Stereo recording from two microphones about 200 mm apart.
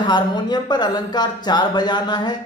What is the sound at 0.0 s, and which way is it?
A man's voice, 20° left (ahead or behind).